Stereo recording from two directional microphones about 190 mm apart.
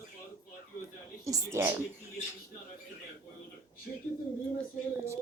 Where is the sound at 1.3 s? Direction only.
15° right (ahead or behind).